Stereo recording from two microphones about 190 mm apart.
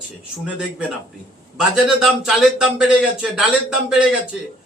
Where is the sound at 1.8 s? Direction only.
Centre (ahead or behind).